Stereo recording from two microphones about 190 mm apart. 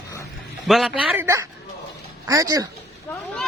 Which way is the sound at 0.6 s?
Centre (ahead or behind).